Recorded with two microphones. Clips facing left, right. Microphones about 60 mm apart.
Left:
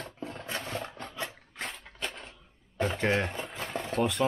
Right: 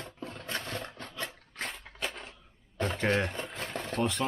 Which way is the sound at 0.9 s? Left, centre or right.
Left.